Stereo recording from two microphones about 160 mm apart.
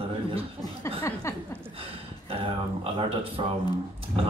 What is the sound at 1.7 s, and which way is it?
A man's voice, 35° right (ahead or behind).